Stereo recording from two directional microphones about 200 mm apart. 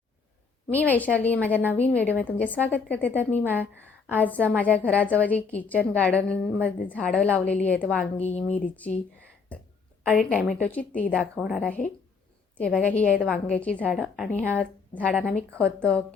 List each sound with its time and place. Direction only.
0.7 s a woman's voice: 10° left (ahead or behind)
10.6 s a woman's voice: 5° left (ahead or behind)